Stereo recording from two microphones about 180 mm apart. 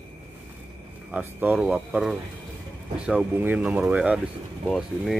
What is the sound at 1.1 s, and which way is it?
Speech, 10° right (ahead or behind).